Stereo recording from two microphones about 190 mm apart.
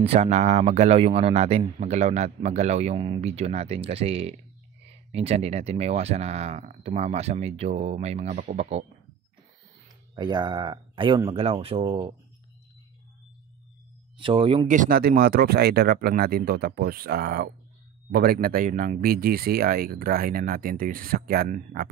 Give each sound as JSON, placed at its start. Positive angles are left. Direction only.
{"t": 0.0, "sound": "a man's voice", "side_deg": -35}
{"t": 10.1, "sound": "speech", "side_deg": -20}
{"t": 14.1, "sound": "speech", "side_deg": -25}
{"t": 14.7, "sound": "speech", "side_deg": -45}